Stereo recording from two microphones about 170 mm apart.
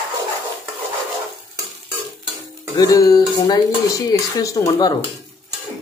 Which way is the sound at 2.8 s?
20° left (ahead or behind).